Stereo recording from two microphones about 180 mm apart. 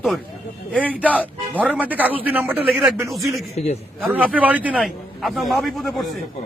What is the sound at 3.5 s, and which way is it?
Speech, 35° left (ahead or behind).